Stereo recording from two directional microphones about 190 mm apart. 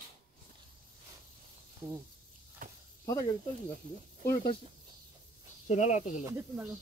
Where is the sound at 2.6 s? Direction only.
45° right (ahead or behind).